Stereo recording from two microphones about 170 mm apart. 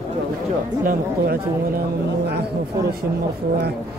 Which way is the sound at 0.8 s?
65° right (ahead or behind).